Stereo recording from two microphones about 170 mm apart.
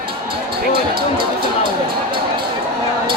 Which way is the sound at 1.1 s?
30° right (ahead or behind).